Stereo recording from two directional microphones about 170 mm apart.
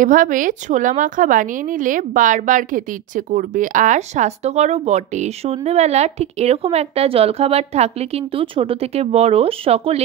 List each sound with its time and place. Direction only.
0.0 s a woman's voice: 50° right (ahead or behind)